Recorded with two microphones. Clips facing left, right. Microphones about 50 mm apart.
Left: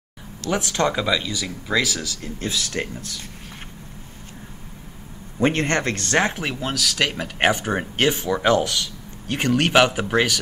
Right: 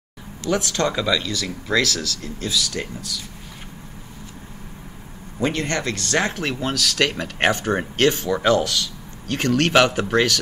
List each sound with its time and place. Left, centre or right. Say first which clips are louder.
0.5 s speech: even; left
2.4 s speech: right 1 dB; left
5.4 s speech: left 3 dB; left
6.4 s speech: right 1 dB; centre